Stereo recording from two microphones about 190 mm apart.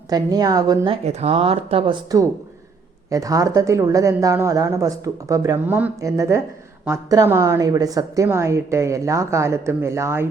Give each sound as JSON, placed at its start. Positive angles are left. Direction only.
{"t": 0.1, "sound": "a woman's voice", "side_deg": -20}
{"t": 1.0, "sound": "a woman's voice", "side_deg": -30}